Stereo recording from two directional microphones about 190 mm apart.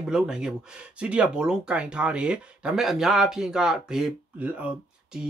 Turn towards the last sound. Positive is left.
turn(degrees=-5)  # may be behind; listen again after turning